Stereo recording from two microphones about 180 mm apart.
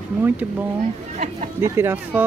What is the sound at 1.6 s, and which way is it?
Speech, 15° right (ahead or behind).